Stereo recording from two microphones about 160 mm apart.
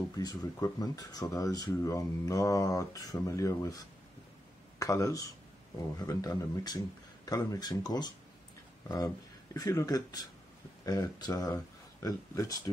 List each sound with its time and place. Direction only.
0.2 s speech: 25° left (ahead or behind)